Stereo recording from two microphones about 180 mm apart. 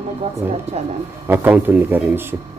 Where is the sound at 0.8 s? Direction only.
35° right (ahead or behind).